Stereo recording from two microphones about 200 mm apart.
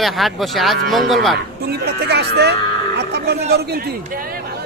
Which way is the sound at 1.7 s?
55° right (ahead or behind).